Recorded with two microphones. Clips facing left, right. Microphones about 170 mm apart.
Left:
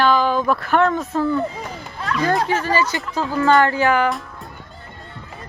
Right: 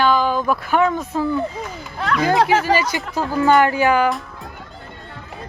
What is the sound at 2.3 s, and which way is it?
Speech, 75° right (ahead or behind).